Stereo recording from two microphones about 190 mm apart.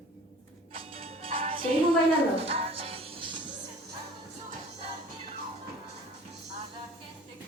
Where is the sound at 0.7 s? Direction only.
30° right (ahead or behind).